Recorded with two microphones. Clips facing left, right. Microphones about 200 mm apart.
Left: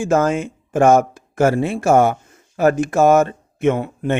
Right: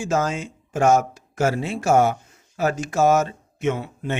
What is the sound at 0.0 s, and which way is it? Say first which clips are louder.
Speech: left 6 dB; 55° left (ahead or behind).